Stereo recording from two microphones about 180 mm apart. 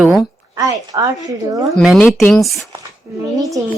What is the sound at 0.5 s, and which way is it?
Speech, 20° right (ahead or behind).